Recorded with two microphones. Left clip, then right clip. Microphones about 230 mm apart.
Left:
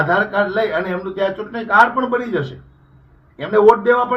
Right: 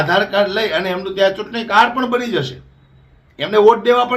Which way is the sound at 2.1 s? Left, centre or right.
Right.